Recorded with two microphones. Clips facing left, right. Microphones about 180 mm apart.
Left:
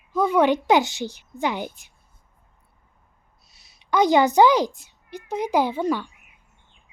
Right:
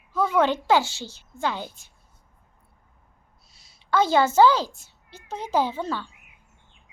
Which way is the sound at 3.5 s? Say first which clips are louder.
Left 1 dB; 15° left (ahead or behind).